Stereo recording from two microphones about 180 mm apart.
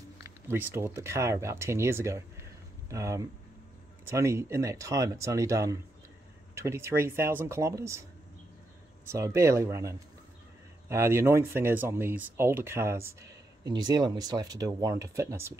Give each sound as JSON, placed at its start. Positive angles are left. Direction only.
{"t": 0.2, "sound": "speech", "side_deg": -10}
{"t": 9.0, "sound": "speech", "side_deg": -15}